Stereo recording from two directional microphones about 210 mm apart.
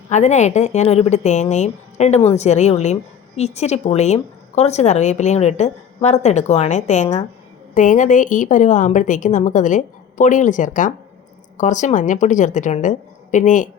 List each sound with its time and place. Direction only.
0.1 s speech: 35° left (ahead or behind)